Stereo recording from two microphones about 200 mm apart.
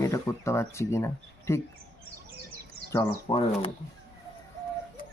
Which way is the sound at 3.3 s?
30° left (ahead or behind).